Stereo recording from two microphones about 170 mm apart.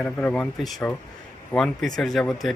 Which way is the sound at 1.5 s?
5° left (ahead or behind).